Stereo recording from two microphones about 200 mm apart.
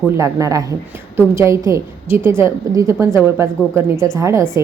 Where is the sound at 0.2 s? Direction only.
15° right (ahead or behind).